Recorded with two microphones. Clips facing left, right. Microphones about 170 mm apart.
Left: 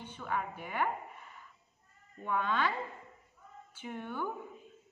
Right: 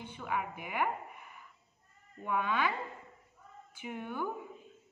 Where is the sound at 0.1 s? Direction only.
10° right (ahead or behind).